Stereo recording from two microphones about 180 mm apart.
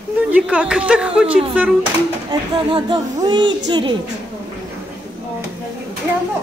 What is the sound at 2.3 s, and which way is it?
Speech, 25° right (ahead or behind).